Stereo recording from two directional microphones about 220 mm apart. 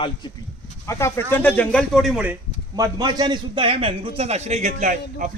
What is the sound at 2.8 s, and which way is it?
A man's voice, 15° right (ahead or behind).